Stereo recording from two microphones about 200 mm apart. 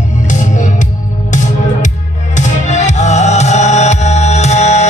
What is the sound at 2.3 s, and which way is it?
Music, 35° left (ahead or behind).